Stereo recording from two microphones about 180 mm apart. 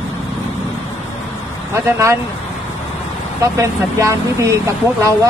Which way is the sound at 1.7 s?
15° right (ahead or behind).